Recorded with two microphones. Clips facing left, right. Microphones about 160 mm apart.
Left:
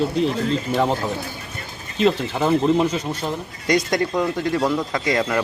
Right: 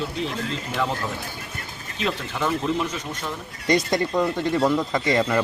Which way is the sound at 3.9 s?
Centre (ahead or behind).